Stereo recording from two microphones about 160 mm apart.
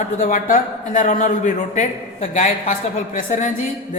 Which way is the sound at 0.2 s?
50° left (ahead or behind).